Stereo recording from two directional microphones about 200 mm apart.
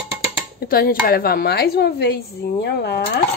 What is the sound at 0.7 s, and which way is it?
A woman's voice, 50° left (ahead or behind).